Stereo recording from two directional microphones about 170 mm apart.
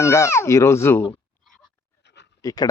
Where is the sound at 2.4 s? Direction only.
25° left (ahead or behind).